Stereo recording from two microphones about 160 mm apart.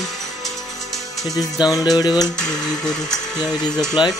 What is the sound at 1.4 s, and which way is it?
Music, 25° left (ahead or behind).